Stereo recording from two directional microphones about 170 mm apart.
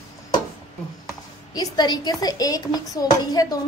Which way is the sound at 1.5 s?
25° left (ahead or behind).